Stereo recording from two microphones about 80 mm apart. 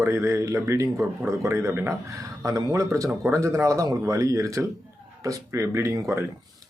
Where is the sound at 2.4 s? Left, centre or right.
Right.